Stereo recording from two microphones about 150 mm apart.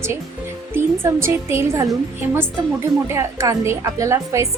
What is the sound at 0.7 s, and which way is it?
Speech, 15° right (ahead or behind).